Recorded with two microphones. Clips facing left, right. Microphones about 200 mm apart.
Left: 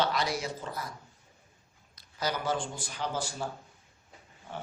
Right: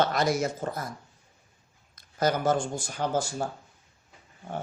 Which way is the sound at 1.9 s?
50° right (ahead or behind).